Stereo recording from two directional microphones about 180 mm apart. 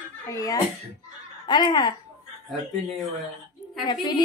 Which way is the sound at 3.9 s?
25° left (ahead or behind).